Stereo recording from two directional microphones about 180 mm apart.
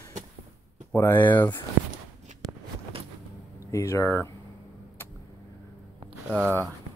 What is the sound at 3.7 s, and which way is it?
Speech, 15° left (ahead or behind).